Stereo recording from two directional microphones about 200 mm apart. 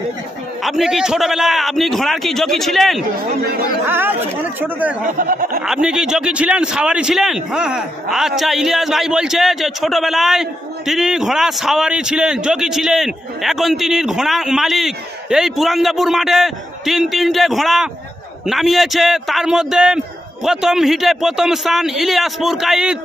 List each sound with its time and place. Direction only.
0.6 s a man's voice: centre (ahead or behind)
3.8 s speech: 10° right (ahead or behind)
5.1 s speech: 45° right (ahead or behind)
5.7 s a man's voice: 5° right (ahead or behind)